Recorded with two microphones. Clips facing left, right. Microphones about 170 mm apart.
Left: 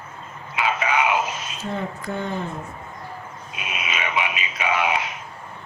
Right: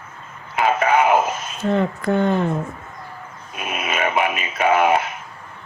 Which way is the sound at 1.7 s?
70° right (ahead or behind).